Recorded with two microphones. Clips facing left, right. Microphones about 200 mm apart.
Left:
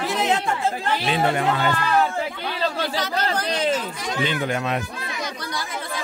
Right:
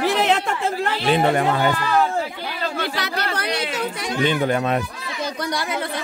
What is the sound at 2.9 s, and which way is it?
Speech, 70° right (ahead or behind).